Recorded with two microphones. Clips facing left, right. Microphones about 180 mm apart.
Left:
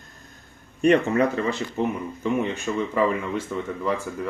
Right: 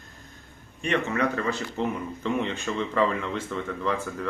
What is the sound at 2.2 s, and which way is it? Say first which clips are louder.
Speech: left 3 dB; 15° left (ahead or behind).